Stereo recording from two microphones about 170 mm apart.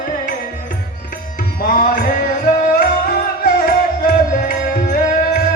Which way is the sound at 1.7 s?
55° left (ahead or behind).